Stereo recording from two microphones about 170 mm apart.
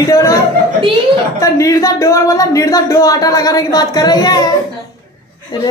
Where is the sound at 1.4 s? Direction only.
15° left (ahead or behind).